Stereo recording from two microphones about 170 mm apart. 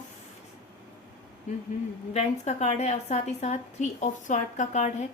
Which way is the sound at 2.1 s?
40° left (ahead or behind).